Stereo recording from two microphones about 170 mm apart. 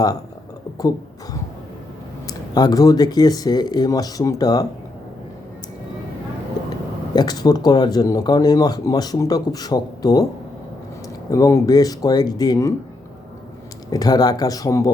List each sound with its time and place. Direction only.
0.8 s speech: 20° left (ahead or behind)
7.2 s speech: 25° left (ahead or behind)
11.3 s speech: 20° left (ahead or behind)
13.9 s speech: 20° left (ahead or behind)